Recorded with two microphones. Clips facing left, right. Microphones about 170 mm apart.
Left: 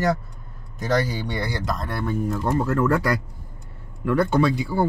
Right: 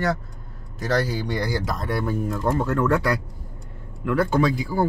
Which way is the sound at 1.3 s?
Centre (ahead or behind).